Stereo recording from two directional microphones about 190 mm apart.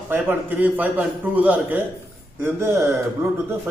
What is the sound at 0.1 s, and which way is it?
A man's voice, 10° right (ahead or behind).